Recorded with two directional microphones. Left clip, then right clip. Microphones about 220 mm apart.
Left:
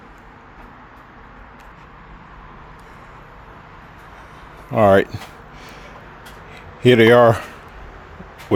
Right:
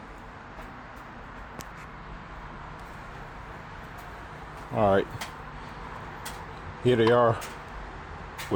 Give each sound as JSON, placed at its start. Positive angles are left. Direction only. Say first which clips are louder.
{"t": 4.7, "sound": "speech", "louder": "left 10 dB", "side_deg": 55}
{"t": 6.8, "sound": "speech", "louder": "left 10 dB", "side_deg": 50}